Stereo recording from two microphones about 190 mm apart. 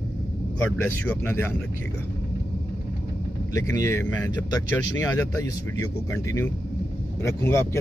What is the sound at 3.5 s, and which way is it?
A man's voice, 15° left (ahead or behind).